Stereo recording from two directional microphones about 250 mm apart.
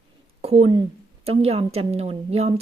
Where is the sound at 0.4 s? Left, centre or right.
Right.